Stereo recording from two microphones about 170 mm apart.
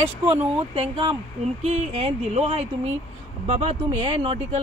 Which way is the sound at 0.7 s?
35° right (ahead or behind).